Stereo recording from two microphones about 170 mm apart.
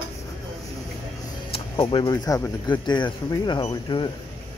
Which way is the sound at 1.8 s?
25° left (ahead or behind).